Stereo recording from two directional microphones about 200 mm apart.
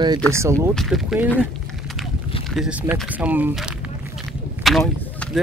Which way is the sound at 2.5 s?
5° right (ahead or behind).